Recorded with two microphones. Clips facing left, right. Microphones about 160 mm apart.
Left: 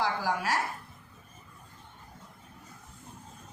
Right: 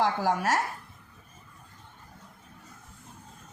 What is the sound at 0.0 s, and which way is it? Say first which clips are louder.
Speech: right 4 dB; 45° right (ahead or behind).